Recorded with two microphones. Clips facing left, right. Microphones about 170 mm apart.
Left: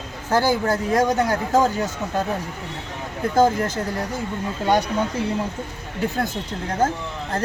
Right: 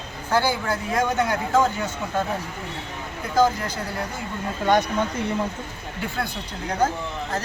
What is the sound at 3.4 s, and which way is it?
Speech, 45° left (ahead or behind).